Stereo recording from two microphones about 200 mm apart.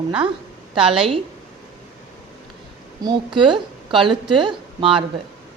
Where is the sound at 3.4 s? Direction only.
25° right (ahead or behind).